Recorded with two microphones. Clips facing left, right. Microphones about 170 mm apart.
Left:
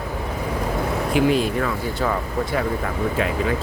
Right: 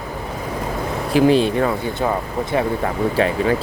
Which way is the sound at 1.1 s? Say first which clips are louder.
Right 5 dB; 30° right (ahead or behind).